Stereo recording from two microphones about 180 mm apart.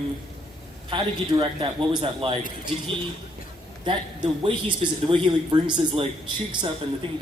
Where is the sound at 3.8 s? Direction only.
25° right (ahead or behind).